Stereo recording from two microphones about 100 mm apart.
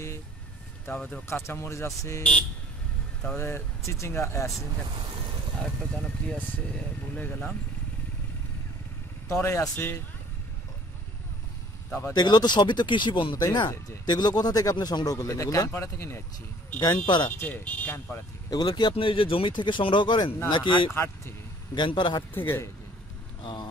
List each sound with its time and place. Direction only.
0.8 s speech: 15° left (ahead or behind)
3.3 s speech: 25° left (ahead or behind)
5.6 s speech: 10° left (ahead or behind)
9.3 s speech: 30° left (ahead or behind)
12.1 s speech: 45° left (ahead or behind)
13.4 s speech: 40° left (ahead or behind)
16.8 s speech: 45° left (ahead or behind)
17.4 s speech: 15° left (ahead or behind)
18.5 s speech: 45° left (ahead or behind)
18.9 s speech: 65° left (ahead or behind)
22.3 s speech: 20° left (ahead or behind)
23.4 s speech: 45° left (ahead or behind)